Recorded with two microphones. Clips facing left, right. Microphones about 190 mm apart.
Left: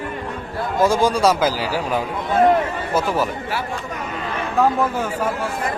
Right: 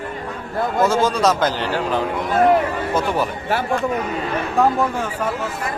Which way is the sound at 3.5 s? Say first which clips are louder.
Right 5 dB; 50° right (ahead or behind).